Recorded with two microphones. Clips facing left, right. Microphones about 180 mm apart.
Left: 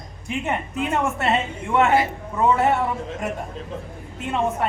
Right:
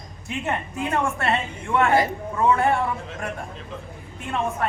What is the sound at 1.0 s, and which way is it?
Speech, 20° left (ahead or behind).